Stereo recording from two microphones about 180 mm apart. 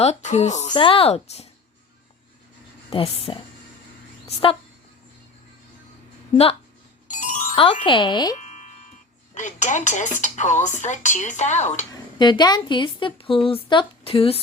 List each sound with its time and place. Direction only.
0.0 s speech: 40° left (ahead or behind)
0.7 s speech: 30° left (ahead or behind)
2.9 s speech: 30° left (ahead or behind)
6.3 s speech: 35° left (ahead or behind)
7.1 s music: 45° left (ahead or behind)
7.5 s speech: 30° left (ahead or behind)
8.4 s music: 40° left (ahead or behind)
9.3 s speech: 45° left (ahead or behind)
12.2 s speech: 25° left (ahead or behind)